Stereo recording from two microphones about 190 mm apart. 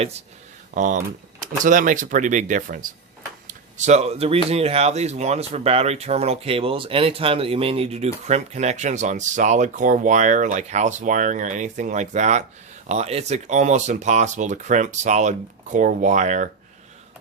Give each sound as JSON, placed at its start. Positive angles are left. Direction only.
{"t": 0.7, "sound": "speech", "side_deg": -40}
{"t": 3.4, "sound": "a sound", "side_deg": -35}
{"t": 4.4, "sound": "speech", "side_deg": -30}